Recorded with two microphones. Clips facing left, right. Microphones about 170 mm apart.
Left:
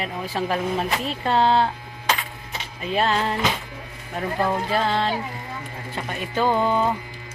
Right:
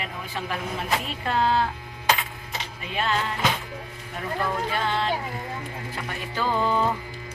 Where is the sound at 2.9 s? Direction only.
35° left (ahead or behind).